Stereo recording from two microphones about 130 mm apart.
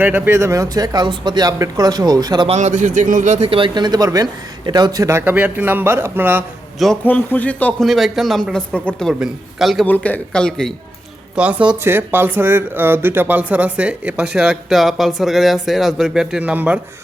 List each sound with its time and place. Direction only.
0.0 s speech: 15° right (ahead or behind); by 2.5 s 30° right (ahead or behind)
2.5 s a man's voice: 65° right (ahead or behind); by 6.4 s 15° right (ahead or behind)
7.0 s speech: 15° left (ahead or behind)
7.9 s speech: centre (ahead or behind)
9.8 s speech: 15° left (ahead or behind)
11.3 s speech: 10° right (ahead or behind)